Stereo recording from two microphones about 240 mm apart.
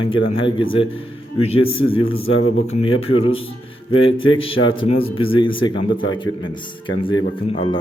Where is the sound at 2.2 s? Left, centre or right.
Left.